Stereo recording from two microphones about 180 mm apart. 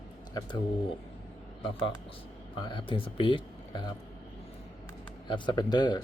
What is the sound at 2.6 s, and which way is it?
A man's voice, 25° left (ahead or behind).